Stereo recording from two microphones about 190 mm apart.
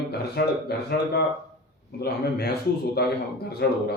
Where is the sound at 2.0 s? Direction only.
55° left (ahead or behind).